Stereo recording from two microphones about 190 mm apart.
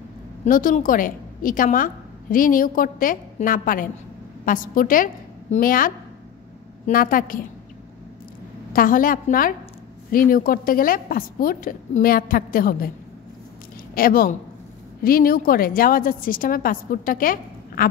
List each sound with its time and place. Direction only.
0.5 s a woman's voice: 45° left (ahead or behind)
8.7 s a woman's voice: 45° left (ahead or behind)
13.9 s a woman's voice: 50° left (ahead or behind)